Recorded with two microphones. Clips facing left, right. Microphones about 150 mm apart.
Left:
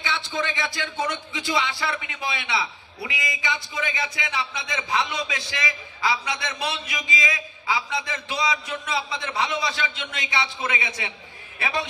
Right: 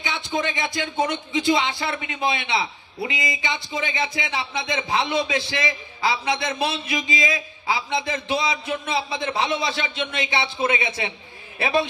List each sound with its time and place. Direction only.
0.0 s a man's voice: 20° right (ahead or behind)